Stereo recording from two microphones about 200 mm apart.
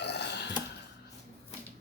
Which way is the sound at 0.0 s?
55° left (ahead or behind).